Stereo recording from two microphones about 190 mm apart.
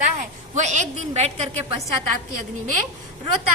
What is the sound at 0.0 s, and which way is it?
A woman's voice, 40° right (ahead or behind).